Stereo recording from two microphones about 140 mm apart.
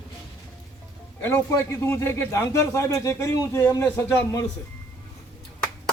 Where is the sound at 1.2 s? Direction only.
15° left (ahead or behind).